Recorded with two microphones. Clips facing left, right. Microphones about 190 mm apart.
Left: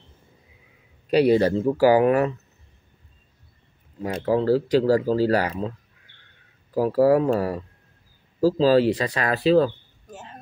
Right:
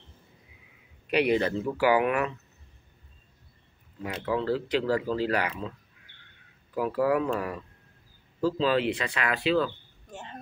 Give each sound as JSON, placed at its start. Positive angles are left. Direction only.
{"t": 1.1, "sound": "speech", "side_deg": 35}
{"t": 4.0, "sound": "speech", "side_deg": 40}
{"t": 6.7, "sound": "speech", "side_deg": 35}
{"t": 10.1, "sound": "a sound", "side_deg": 0}